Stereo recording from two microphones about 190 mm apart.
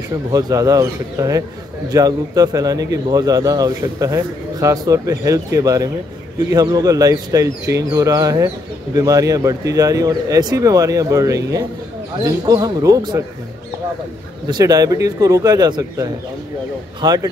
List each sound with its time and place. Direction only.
0.1 s a man's voice: 20° right (ahead or behind)
14.5 s a man's voice: 20° right (ahead or behind)